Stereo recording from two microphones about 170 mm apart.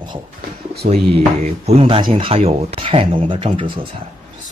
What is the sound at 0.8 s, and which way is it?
Speech, 45° right (ahead or behind).